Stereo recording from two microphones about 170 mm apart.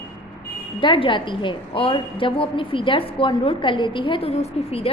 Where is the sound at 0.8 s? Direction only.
30° left (ahead or behind).